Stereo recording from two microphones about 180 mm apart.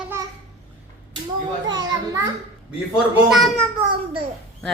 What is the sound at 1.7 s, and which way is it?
Speech, 25° right (ahead or behind).